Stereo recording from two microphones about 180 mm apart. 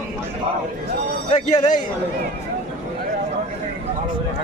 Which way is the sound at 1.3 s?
45° left (ahead or behind).